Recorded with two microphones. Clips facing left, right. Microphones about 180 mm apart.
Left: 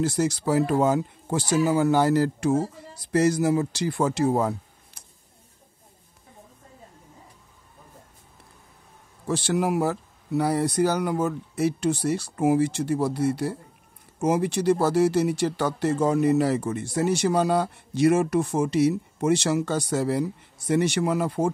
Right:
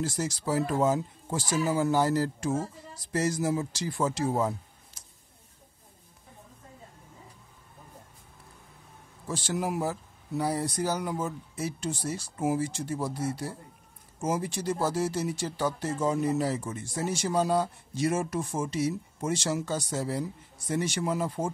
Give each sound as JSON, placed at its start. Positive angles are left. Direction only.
{"t": 0.0, "sound": "speech", "side_deg": 65}
{"t": 9.3, "sound": "speech", "side_deg": 70}